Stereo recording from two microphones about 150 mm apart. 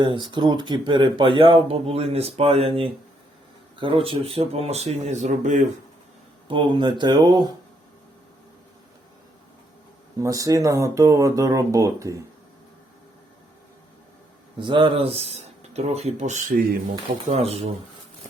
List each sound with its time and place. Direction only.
0.0 s speech: 30° right (ahead or behind); by 5.6 s 55° right (ahead or behind)
6.5 s speech: 30° right (ahead or behind)
10.2 s speech: 25° right (ahead or behind)
14.6 s speech: 35° right (ahead or behind); by 16.6 s 55° right (ahead or behind)
17.2 s speech: 45° right (ahead or behind)